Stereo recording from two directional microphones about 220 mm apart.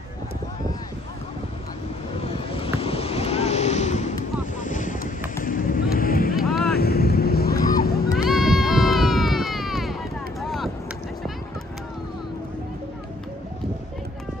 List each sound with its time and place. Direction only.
2.2 s waves: 25° left (ahead or behind)
4.6 s wind noise: 35° left (ahead or behind)
5.4 s a sound: 40° left (ahead or behind)
6.3 s vehicle: centre (ahead or behind)
6.8 s vehicle: 45° left (ahead or behind)
7.7 s music: 45° left (ahead or behind)
8.3 s a sound: centre (ahead or behind)